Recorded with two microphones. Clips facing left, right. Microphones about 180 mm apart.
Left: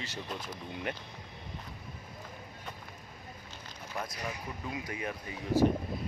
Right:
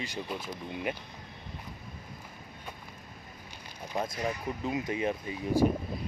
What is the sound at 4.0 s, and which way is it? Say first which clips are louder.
Speech: right 6 dB; 15° right (ahead or behind).